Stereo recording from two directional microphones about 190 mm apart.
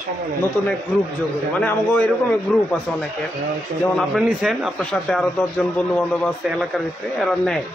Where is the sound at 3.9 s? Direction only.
Centre (ahead or behind).